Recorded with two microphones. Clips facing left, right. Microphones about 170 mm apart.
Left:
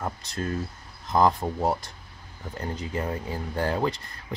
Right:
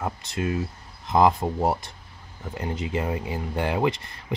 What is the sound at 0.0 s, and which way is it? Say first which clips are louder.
Speech: right 3 dB; 15° right (ahead or behind).